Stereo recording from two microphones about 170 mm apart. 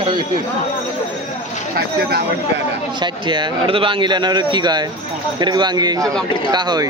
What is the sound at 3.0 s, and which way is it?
Speech, 25° right (ahead or behind).